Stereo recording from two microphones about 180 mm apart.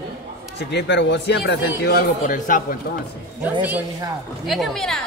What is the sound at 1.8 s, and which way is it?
Speech, 60° left (ahead or behind).